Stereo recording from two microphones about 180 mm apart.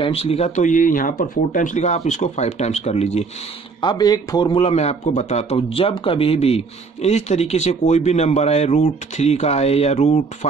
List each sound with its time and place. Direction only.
0.0 s a man's voice: 35° left (ahead or behind)
3.8 s a man's voice: 25° left (ahead or behind); by 10.2 s 40° left (ahead or behind)